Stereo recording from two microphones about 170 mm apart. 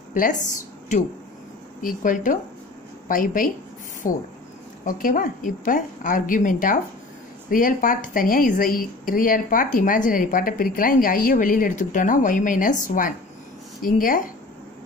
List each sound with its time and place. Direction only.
0.1 s a woman's voice: 50° left (ahead or behind)